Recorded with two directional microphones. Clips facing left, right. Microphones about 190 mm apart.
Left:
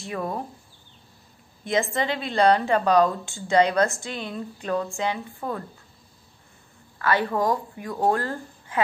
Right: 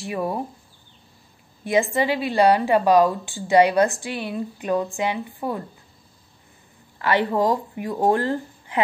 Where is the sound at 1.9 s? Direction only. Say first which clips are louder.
Right 4 dB; 10° right (ahead or behind).